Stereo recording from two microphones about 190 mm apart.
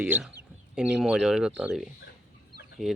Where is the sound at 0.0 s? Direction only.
5° right (ahead or behind).